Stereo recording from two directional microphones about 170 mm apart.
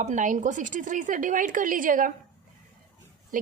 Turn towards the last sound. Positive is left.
turn(degrees=-50)  # may be behind; listen again after turning